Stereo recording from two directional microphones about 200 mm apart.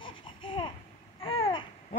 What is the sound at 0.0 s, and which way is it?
Laughter, 25° left (ahead or behind).